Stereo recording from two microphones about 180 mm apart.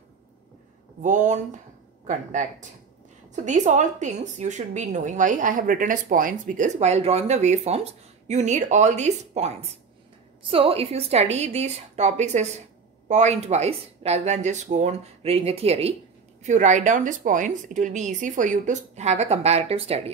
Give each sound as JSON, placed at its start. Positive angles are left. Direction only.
{"t": 1.0, "sound": "a woman's voice", "side_deg": -45}